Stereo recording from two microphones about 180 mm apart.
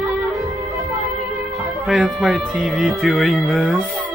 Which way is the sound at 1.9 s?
Centre (ahead or behind).